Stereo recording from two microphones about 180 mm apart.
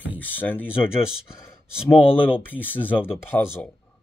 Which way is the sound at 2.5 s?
10° left (ahead or behind).